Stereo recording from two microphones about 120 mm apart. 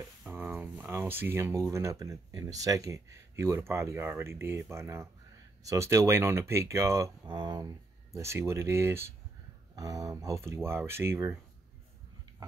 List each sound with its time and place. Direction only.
0.3 s speech: 15° right (ahead or behind)
7.2 s speech: 40° right (ahead or behind); by 11.3 s 20° right (ahead or behind)